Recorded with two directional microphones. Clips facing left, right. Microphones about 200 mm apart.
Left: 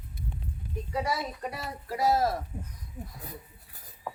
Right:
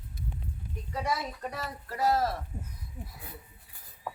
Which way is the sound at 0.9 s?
10° left (ahead or behind).